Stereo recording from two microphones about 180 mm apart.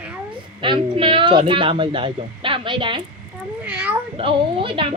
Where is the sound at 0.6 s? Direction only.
25° right (ahead or behind).